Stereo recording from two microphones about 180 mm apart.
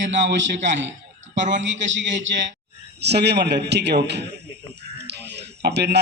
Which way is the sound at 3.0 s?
65° right (ahead or behind).